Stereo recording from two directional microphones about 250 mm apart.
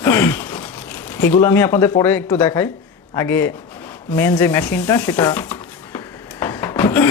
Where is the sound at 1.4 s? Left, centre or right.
Centre.